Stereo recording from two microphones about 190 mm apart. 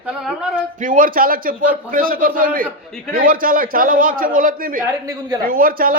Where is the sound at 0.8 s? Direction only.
45° right (ahead or behind).